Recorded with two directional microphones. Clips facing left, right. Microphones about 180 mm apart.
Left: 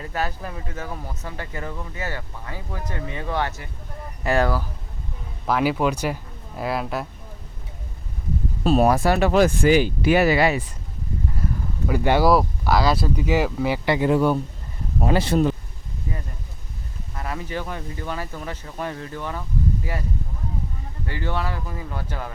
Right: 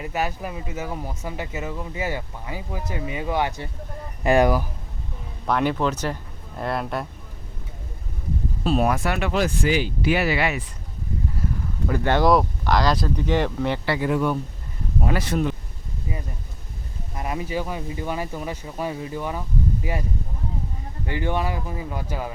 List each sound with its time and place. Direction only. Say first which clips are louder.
0.0 s speech: right 1 dB; 10° right (ahead or behind)
5.5 s speech: left 1 dB; 5° left (ahead or behind)
8.6 s speech: left 4 dB; 40° left (ahead or behind)
11.9 s speech: left 1 dB; 10° left (ahead or behind)
13.8 s speech: left 5 dB; 20° left (ahead or behind)
17.2 s speech: right 3 dB; 15° right (ahead or behind)
21.1 s speech: right 3 dB; 15° right (ahead or behind)